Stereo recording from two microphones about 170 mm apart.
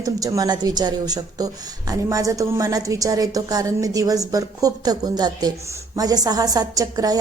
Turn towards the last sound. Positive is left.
turn(degrees=-20)  # may be behind; listen again after turning